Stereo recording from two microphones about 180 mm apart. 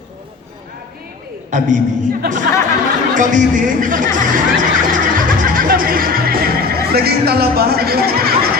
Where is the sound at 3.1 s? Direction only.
45° right (ahead or behind).